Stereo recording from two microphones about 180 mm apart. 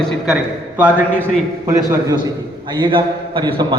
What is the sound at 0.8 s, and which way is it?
A man's voice, 10° right (ahead or behind).